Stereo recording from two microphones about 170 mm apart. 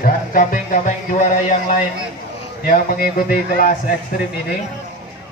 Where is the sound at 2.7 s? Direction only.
55° left (ahead or behind).